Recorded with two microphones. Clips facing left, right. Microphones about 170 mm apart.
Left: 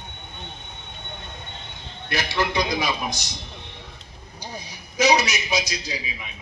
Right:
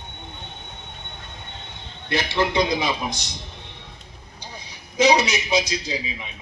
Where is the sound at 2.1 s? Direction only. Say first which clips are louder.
Right 3 dB; 25° right (ahead or behind).